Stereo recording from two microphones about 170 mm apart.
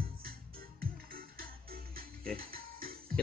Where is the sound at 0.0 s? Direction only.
60° right (ahead or behind).